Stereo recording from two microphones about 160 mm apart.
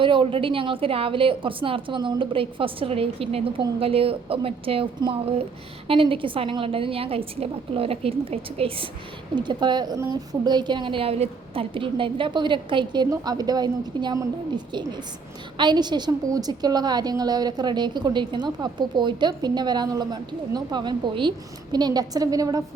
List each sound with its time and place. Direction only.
0.0 s a woman's voice: 30° right (ahead or behind)